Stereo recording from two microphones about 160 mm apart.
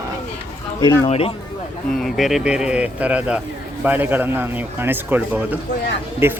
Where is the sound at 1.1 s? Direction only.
35° left (ahead or behind).